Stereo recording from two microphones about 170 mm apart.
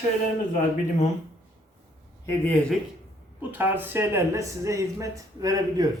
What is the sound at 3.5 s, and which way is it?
Speech, 10° right (ahead or behind).